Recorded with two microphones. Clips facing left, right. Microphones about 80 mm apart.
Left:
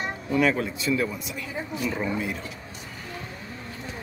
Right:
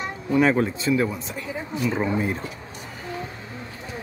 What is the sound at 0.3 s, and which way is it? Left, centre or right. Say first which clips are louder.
Speech: right 4 dB; right.